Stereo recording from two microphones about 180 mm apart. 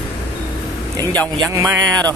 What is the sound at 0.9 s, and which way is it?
Speech, 20° right (ahead or behind).